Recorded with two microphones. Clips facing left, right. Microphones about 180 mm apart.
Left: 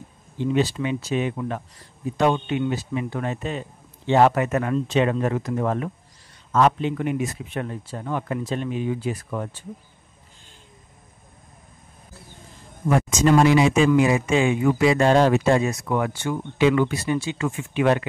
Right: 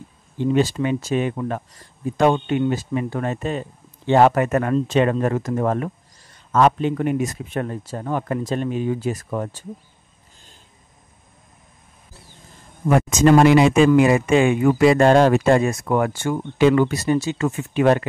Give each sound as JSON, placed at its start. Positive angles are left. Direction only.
{"t": 0.4, "sound": "speech", "side_deg": -45}
{"t": 12.8, "sound": "speech", "side_deg": -60}